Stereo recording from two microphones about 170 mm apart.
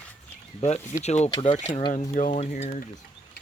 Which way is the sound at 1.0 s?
40° left (ahead or behind).